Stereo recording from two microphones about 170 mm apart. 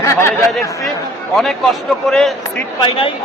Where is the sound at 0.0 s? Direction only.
15° left (ahead or behind).